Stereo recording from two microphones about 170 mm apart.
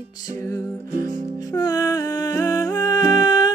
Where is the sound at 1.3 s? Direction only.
20° left (ahead or behind).